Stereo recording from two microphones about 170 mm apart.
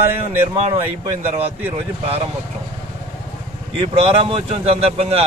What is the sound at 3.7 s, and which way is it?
Speech, 35° right (ahead or behind).